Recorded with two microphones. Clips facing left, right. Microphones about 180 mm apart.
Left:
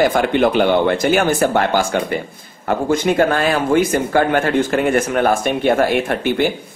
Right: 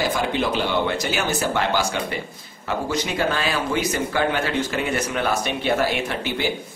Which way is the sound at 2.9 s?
50° left (ahead or behind).